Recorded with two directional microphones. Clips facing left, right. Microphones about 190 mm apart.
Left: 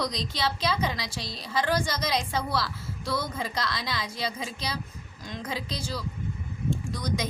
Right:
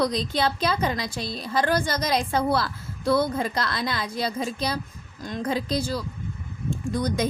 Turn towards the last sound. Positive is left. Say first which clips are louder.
# right 6 dB
turn(degrees=-55)  # may be behind; listen again after turning